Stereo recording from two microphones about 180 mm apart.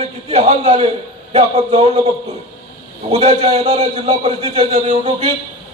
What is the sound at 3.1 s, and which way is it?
A man's voice, 35° right (ahead or behind).